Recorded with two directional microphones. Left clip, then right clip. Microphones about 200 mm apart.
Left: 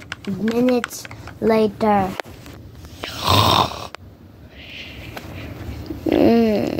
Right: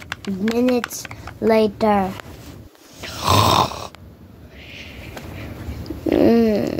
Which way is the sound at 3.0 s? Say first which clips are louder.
Even; centre (ahead or behind).